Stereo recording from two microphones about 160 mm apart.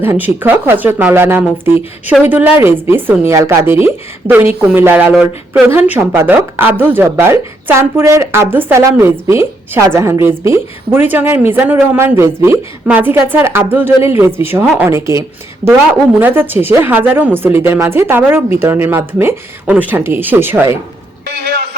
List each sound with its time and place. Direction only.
0.0 s a woman's voice: 15° right (ahead or behind)
16.2 s a woman's voice: 15° right (ahead or behind)